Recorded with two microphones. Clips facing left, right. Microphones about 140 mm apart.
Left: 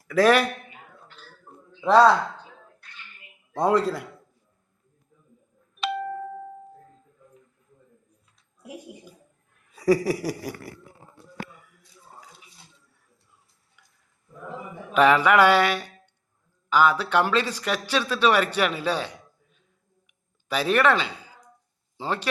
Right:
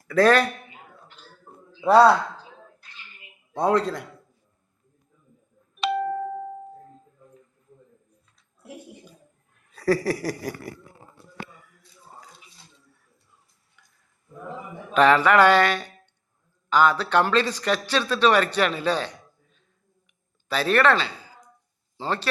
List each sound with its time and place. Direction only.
0.1 s a man's voice: 5° left (ahead or behind)
1.8 s speech: 10° right (ahead or behind)
2.8 s bathtub: 25° right (ahead or behind)
3.5 s a man's voice: centre (ahead or behind)
5.8 s doorbell: 10° right (ahead or behind)
8.6 s a sound: 15° left (ahead or behind)
9.7 s a man's voice: 10° left (ahead or behind)
14.9 s a man's voice: 10° left (ahead or behind)